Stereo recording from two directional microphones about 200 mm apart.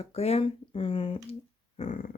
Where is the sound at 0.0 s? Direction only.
30° left (ahead or behind).